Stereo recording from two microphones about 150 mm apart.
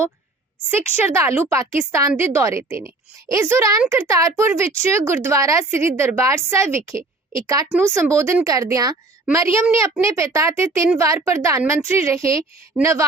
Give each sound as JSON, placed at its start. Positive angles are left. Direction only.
{"t": 0.7, "sound": "a woman's voice", "side_deg": -15}